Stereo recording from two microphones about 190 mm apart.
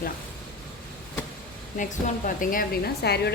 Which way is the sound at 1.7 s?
45° left (ahead or behind).